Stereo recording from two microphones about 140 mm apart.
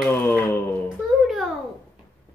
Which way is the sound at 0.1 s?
15° left (ahead or behind).